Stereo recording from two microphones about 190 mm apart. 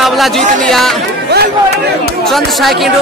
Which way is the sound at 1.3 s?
60° right (ahead or behind).